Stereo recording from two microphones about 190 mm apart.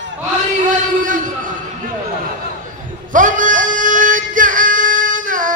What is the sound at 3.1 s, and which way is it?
Music, 45° right (ahead or behind).